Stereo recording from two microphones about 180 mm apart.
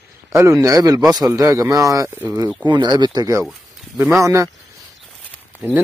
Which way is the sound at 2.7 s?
25° right (ahead or behind).